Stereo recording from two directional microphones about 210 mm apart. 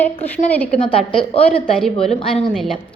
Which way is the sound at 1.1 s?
25° left (ahead or behind).